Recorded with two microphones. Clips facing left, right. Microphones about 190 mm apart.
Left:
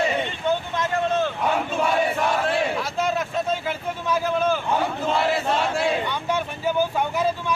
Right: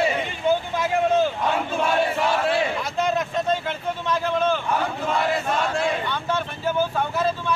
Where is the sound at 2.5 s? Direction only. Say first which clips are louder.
Even; centre (ahead or behind).